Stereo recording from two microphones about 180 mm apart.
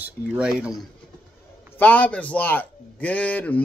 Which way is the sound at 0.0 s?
5° right (ahead or behind).